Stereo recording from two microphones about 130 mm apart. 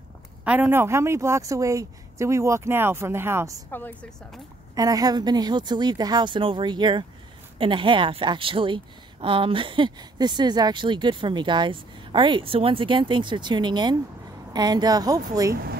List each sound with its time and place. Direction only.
0.5 s speech: 15° right (ahead or behind)
3.7 s a woman's voice: 15° left (ahead or behind)
4.7 s a woman's voice: 30° right (ahead or behind)